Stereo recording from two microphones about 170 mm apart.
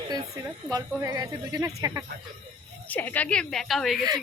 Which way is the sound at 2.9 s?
10° left (ahead or behind).